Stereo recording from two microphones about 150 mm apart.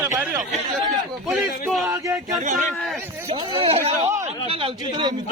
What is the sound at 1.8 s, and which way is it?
Speech, 20° right (ahead or behind).